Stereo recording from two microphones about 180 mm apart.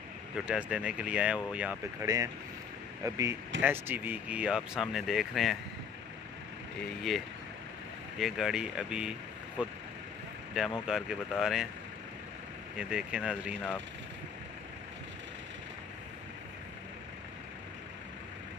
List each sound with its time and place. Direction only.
0.5 s speech: 5° right (ahead or behind)
7.0 s speech: centre (ahead or behind)
12.7 s speech: 5° right (ahead or behind)